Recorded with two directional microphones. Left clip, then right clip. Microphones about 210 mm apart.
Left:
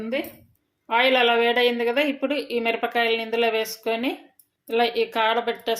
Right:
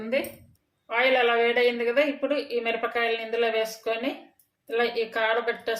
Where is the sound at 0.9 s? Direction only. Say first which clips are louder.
Left 3 dB; 40° left (ahead or behind).